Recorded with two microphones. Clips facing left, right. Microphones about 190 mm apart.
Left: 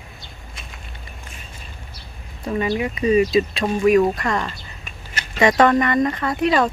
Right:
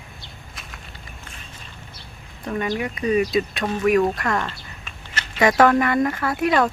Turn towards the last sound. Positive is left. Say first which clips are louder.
# left 1 dB
turn(degrees=0)  # may be behind; listen again after turning